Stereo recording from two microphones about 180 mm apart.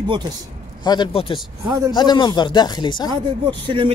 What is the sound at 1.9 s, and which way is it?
Speech, 25° left (ahead or behind).